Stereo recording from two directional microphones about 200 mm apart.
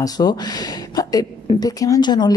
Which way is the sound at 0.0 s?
20° left (ahead or behind).